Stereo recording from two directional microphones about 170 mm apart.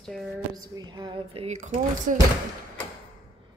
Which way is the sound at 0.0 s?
5° left (ahead or behind).